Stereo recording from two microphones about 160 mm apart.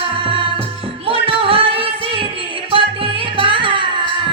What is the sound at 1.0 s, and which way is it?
Music, 35° right (ahead or behind).